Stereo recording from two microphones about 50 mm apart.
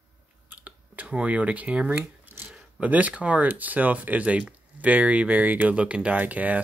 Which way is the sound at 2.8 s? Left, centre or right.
Right.